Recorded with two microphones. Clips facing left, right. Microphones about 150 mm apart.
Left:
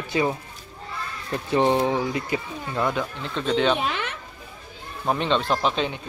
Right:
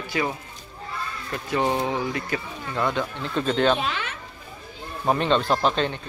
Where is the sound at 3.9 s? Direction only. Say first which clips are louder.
Left 1 dB; 55° left (ahead or behind).